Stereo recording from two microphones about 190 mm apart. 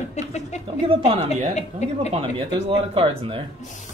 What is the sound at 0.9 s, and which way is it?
Speech, 30° right (ahead or behind).